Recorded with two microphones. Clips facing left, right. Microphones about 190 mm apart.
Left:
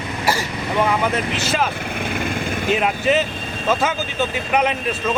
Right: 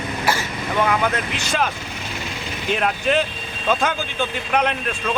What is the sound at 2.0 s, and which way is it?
Vehicle, 55° left (ahead or behind).